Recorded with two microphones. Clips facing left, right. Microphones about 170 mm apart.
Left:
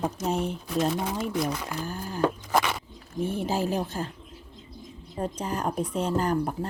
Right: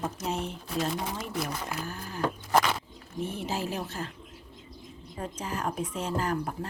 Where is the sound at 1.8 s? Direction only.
35° left (ahead or behind).